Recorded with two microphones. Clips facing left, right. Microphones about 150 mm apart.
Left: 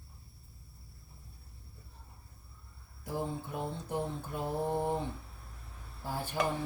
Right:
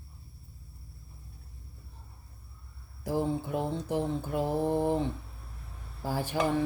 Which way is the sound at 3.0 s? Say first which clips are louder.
Right 7 dB; 90° right.